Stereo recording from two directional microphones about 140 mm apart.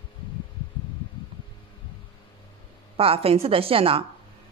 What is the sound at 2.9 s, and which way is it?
A woman's voice, 45° right (ahead or behind).